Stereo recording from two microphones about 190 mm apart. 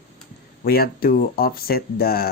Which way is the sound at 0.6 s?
50° left (ahead or behind).